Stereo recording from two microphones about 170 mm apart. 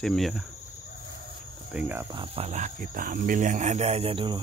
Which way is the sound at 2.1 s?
35° right (ahead or behind).